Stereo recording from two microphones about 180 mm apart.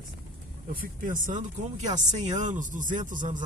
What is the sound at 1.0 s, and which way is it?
Speech, 45° right (ahead or behind).